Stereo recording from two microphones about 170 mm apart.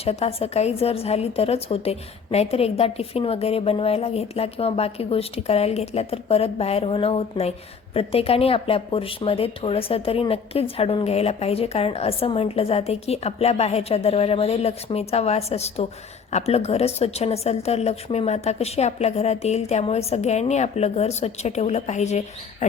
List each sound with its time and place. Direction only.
0.0 s speech: 35° left (ahead or behind)